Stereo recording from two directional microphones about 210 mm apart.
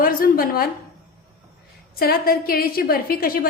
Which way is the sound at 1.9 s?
45° left (ahead or behind).